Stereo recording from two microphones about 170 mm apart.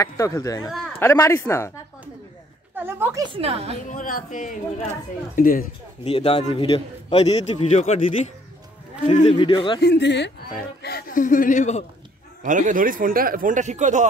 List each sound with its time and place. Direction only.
0.0 s speech: 20° left (ahead or behind)
2.7 s a sound: 10° right (ahead or behind)
3.3 s a woman's voice: 35° right (ahead or behind)
3.9 s speech: 50° left (ahead or behind)
6.0 s a man's voice: 35° left (ahead or behind)
9.1 s a man's voice: 40° left (ahead or behind)
9.4 s a man's voice: 30° left (ahead or behind)
9.8 s speech: 85° left
10.8 s speech: 65° left (ahead or behind); by 11.8 s 45° left (ahead or behind)
12.4 s a man's voice: 50° right (ahead or behind)